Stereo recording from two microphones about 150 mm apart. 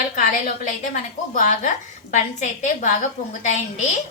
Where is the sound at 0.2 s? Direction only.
60° left (ahead or behind).